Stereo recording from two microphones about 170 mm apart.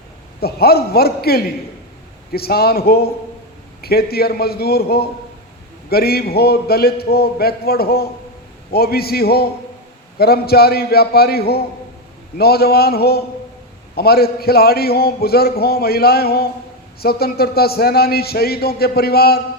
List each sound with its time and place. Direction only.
0.3 s a man's voice: 65° left (ahead or behind)